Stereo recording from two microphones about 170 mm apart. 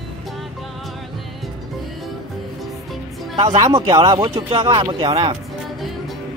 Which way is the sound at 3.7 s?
25° right (ahead or behind).